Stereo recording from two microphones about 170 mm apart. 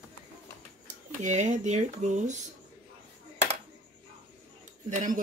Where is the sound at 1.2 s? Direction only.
45° right (ahead or behind).